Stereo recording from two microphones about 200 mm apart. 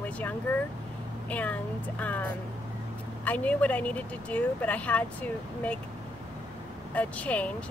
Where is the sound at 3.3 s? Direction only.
10° left (ahead or behind).